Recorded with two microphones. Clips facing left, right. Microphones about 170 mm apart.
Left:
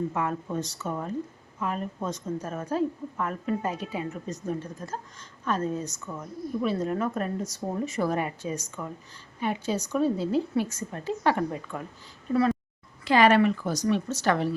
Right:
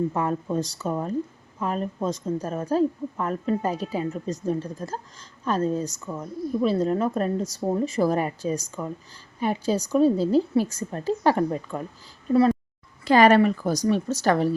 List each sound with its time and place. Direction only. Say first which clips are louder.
0.1 s a woman's voice: right 4 dB; 35° right (ahead or behind)
13.1 s a woman's voice: right 3 dB; 40° right (ahead or behind)